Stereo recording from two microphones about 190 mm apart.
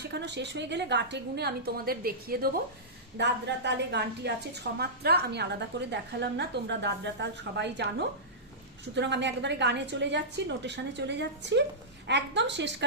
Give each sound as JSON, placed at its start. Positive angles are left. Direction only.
{"t": 0.1, "sound": "a woman's voice", "side_deg": -65}
{"t": 3.2, "sound": "a woman's voice", "side_deg": -65}